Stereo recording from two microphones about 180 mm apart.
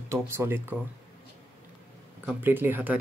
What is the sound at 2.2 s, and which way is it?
Speech, 10° right (ahead or behind).